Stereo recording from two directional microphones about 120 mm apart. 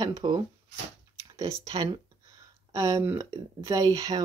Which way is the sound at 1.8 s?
30° right (ahead or behind).